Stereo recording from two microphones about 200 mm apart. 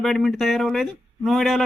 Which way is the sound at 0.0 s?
Centre (ahead or behind).